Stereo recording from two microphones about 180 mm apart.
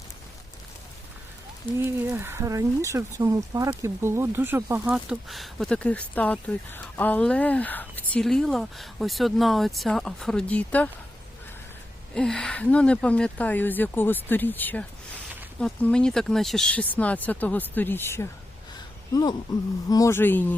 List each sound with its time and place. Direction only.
1.8 s speech: 15° right (ahead or behind)
4.9 s speech: centre (ahead or behind)
12.1 s speech: 5° left (ahead or behind)